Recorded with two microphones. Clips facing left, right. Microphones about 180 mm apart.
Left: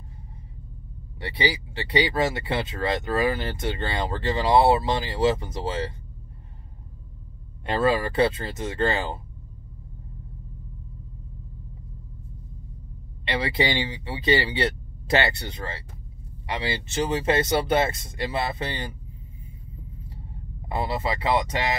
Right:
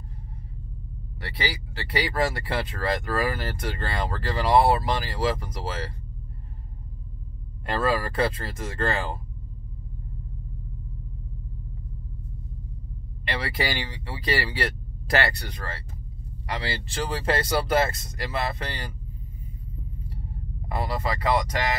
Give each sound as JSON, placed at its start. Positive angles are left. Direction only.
{"t": 1.2, "sound": "speech", "side_deg": 25}
{"t": 7.6, "sound": "speech", "side_deg": 25}
{"t": 13.3, "sound": "speech", "side_deg": 25}
{"t": 20.6, "sound": "speech", "side_deg": 25}